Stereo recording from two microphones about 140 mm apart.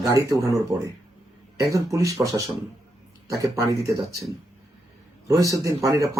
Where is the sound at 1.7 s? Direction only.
25° right (ahead or behind).